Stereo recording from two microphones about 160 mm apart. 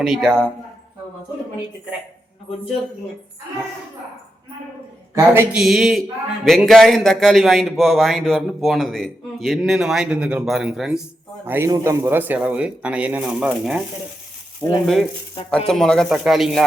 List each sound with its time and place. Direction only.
0.0 s speech: centre (ahead or behind)
5.1 s a man's voice: 15° right (ahead or behind)
5.5 s speech: centre (ahead or behind)
11.4 s a man's voice: 15° right (ahead or behind)
14.6 s speech: 15° left (ahead or behind)